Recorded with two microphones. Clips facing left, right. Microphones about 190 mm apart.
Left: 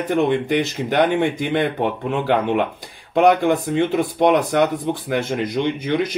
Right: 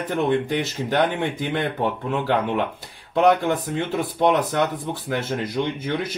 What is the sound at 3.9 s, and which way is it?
Speech, 15° left (ahead or behind).